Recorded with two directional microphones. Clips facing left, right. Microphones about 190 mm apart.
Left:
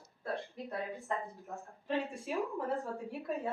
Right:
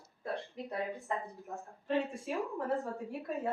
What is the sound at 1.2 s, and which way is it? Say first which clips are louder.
Speech: right 1 dB; centre (ahead or behind).